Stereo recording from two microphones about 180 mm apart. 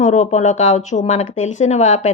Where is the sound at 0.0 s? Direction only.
40° left (ahead or behind).